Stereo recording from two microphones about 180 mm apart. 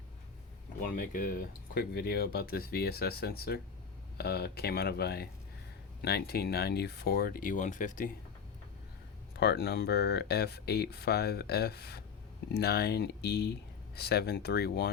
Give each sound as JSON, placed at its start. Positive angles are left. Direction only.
{"t": 0.9, "sound": "speech", "side_deg": 50}
{"t": 9.4, "sound": "speech", "side_deg": 65}